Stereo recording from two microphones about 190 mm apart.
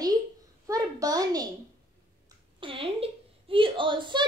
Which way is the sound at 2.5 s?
30° right (ahead or behind).